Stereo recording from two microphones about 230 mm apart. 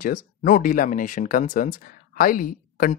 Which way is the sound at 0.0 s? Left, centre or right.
Left.